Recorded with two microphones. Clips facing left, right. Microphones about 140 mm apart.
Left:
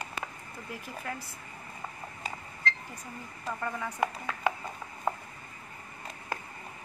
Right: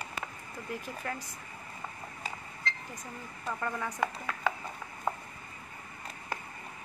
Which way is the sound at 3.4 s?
Centre (ahead or behind).